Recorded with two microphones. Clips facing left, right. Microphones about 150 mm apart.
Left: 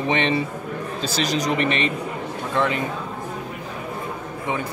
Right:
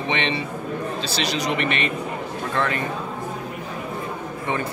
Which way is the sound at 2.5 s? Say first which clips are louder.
Left 2 dB; 15° left (ahead or behind).